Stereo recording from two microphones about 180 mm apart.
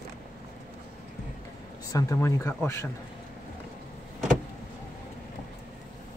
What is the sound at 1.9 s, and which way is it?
Speech, 15° left (ahead or behind).